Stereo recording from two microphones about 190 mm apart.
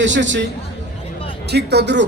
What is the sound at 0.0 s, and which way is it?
Speech, 70° right (ahead or behind).